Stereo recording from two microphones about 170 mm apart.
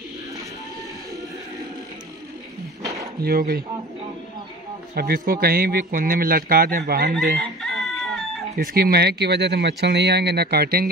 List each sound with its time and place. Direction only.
2.8 s a sound: 20° right (ahead or behind)
3.2 s a man's voice: 60° right (ahead or behind)
4.9 s a man's voice: 60° right (ahead or behind)
7.3 s chicken: centre (ahead or behind)
8.5 s speech: 65° right (ahead or behind)